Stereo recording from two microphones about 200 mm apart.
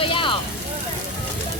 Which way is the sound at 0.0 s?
25° left (ahead or behind).